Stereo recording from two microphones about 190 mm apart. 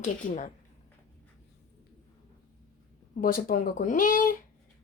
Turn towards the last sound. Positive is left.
turn(degrees=45)  # may be behind; listen again after turning